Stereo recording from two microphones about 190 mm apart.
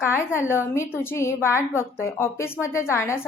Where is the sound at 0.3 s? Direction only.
15° left (ahead or behind).